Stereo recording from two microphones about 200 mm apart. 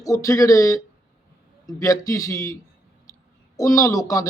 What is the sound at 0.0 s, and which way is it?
Speech, 15° left (ahead or behind).